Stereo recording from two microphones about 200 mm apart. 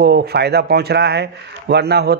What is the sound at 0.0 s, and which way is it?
A man's voice, 55° right (ahead or behind).